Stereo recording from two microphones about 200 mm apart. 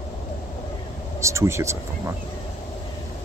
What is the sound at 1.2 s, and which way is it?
Speech, 15° right (ahead or behind).